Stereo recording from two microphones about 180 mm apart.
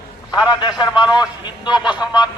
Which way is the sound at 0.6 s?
25° left (ahead or behind).